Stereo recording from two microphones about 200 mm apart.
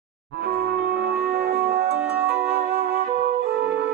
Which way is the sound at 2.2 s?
10° right (ahead or behind).